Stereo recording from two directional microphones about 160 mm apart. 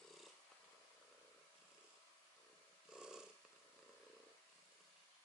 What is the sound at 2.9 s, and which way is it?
Purr, 5° right (ahead or behind).